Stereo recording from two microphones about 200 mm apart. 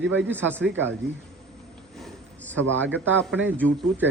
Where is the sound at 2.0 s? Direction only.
5° left (ahead or behind).